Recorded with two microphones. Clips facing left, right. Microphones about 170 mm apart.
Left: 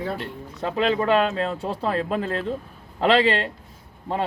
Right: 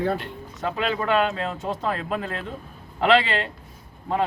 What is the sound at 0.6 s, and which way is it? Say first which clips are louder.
Speech: left 4 dB; 30° left (ahead or behind).